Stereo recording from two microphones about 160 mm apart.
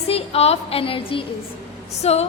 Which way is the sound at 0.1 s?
40° left (ahead or behind).